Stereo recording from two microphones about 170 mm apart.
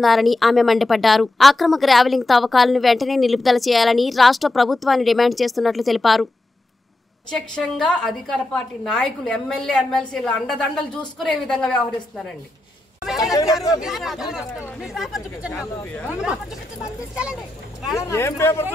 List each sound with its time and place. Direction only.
0.0 s a woman's voice: centre (ahead or behind)
7.2 s a woman's voice: 5° left (ahead or behind)
13.3 s speech: 20° left (ahead or behind)
13.7 s a woman's voice: centre (ahead or behind)
15.8 s speech: 10° left (ahead or behind)
17.1 s speech: 5° right (ahead or behind)
17.9 s speech: 15° left (ahead or behind)